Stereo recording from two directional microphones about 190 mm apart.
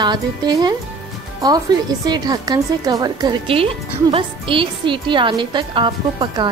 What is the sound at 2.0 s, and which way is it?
A woman's voice, 20° right (ahead or behind).